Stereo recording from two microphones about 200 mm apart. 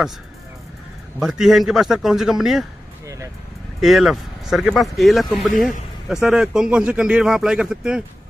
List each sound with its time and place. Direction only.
1.2 s speech: centre (ahead or behind)
3.8 s speech: centre (ahead or behind)